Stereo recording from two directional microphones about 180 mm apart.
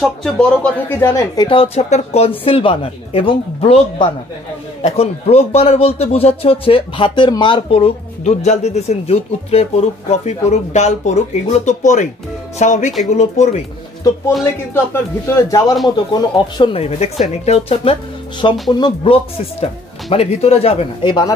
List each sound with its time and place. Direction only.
0.0 s speech: 5° left (ahead or behind); by 13.6 s 40° left (ahead or behind)
14.4 s a man's voice: 15° left (ahead or behind)
16.1 s speech: 25° left (ahead or behind)
18.4 s speech: 25° left (ahead or behind)
19.6 s speech: 35° left (ahead or behind)